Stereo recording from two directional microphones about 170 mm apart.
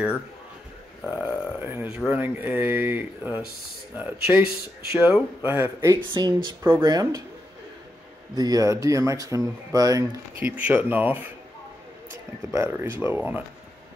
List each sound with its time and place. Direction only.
1.2 s speech: 15° left (ahead or behind)
1.6 s speech: 10° right (ahead or behind)
5.9 s speech: 30° right (ahead or behind)
8.4 s speech: 20° right (ahead or behind)
10.4 s speech: 10° right (ahead or behind)
12.5 s speech: 15° right (ahead or behind)